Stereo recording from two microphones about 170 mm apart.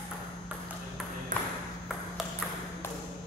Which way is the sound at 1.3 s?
50° right (ahead or behind).